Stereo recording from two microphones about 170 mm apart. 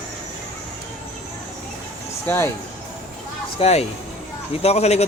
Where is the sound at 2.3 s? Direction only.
10° left (ahead or behind).